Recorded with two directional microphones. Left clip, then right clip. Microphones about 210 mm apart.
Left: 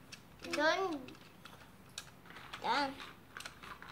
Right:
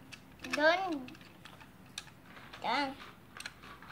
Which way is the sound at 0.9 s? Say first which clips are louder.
Right 4 dB; 10° right (ahead or behind).